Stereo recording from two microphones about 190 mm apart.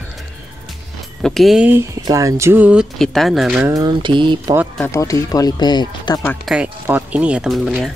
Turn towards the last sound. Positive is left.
turn(degrees=0)  # may be behind; listen again after turning